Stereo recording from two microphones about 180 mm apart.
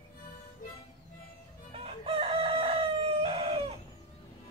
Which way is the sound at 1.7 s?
30° right (ahead or behind).